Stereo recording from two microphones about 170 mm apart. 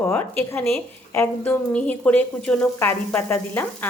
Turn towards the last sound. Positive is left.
turn(degrees=10)  # may be behind; listen again after turning